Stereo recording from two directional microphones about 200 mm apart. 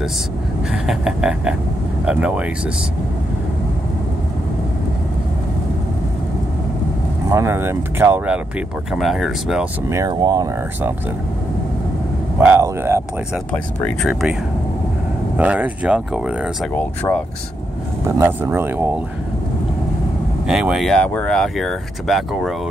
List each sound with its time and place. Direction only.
0.8 s speech: 5° right (ahead or behind)
7.2 s speech: 15° right (ahead or behind)
9.8 s speech: 15° right (ahead or behind)
12.4 s speech: 10° right (ahead or behind)
13.5 s speech: centre (ahead or behind)
15.3 s speech: 5° right (ahead or behind)
16.7 s speech: 5° left (ahead or behind)
18.0 s speech: 15° right (ahead or behind)
20.4 s speech: 5° right (ahead or behind)